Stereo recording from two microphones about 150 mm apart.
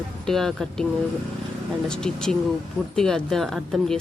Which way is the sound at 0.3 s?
5° left (ahead or behind).